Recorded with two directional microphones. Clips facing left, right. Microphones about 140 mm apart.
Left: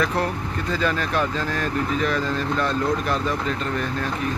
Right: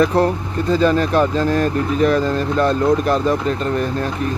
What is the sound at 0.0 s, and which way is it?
Speech, 35° right (ahead or behind).